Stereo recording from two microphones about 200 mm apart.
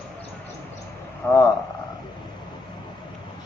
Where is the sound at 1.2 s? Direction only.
10° left (ahead or behind).